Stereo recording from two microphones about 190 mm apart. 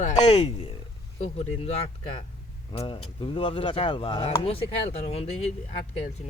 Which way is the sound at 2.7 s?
25° left (ahead or behind).